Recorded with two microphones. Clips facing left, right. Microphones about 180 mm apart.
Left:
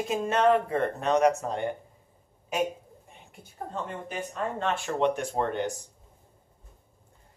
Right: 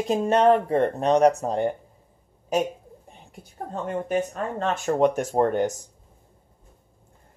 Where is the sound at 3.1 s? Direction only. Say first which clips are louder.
Right 4 dB; 35° right (ahead or behind).